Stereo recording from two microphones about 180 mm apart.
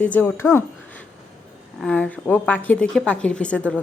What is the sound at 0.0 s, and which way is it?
Speech, 10° left (ahead or behind).